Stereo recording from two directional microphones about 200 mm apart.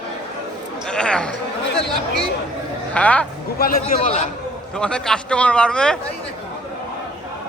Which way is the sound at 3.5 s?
45° left (ahead or behind).